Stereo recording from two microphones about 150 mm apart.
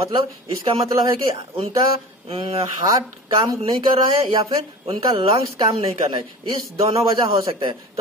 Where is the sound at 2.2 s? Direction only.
40° right (ahead or behind).